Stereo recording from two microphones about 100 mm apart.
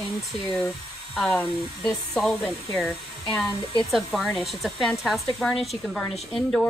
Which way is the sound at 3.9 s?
Centre (ahead or behind).